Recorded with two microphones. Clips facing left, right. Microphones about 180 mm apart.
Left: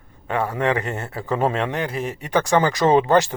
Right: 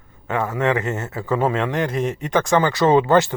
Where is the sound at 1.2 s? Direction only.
20° left (ahead or behind).